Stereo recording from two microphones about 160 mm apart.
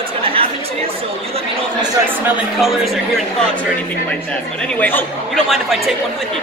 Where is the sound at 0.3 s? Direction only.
35° right (ahead or behind).